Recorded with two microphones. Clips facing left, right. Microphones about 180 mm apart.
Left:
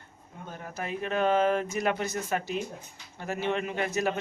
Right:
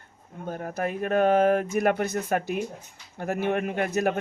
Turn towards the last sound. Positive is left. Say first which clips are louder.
# right 4 dB
turn(degrees=-55)  # may be behind; listen again after turning